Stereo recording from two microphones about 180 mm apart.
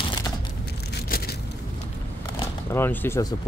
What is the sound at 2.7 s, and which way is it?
Speech, 10° left (ahead or behind).